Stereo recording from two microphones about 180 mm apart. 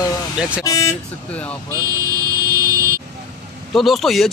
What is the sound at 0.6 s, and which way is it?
Speech, 20° left (ahead or behind).